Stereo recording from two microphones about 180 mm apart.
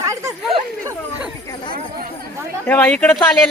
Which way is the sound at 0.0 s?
15° right (ahead or behind).